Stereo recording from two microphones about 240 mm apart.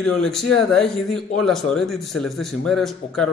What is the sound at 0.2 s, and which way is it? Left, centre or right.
A man's voice, centre.